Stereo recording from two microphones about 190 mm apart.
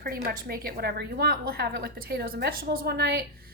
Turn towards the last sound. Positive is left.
turn(degrees=-60)  # may be behind; listen again after turning